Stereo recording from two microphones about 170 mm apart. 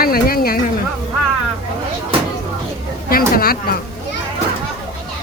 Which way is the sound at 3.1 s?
60° left (ahead or behind).